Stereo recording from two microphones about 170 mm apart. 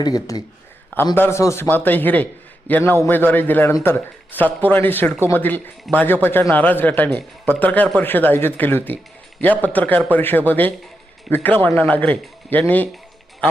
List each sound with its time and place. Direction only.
0.0 s a man's voice: 25° left (ahead or behind)